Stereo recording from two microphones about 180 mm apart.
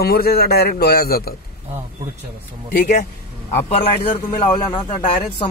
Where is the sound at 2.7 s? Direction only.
45° left (ahead or behind).